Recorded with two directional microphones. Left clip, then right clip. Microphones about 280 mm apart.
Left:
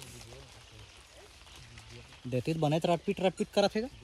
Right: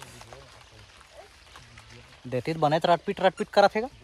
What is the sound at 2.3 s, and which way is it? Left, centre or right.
Speech, centre.